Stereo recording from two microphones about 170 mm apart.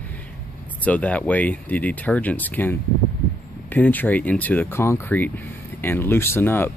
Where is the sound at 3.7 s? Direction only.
10° left (ahead or behind).